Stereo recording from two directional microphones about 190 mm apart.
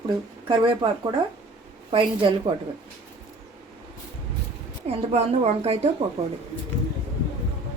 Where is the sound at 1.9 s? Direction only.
25° right (ahead or behind).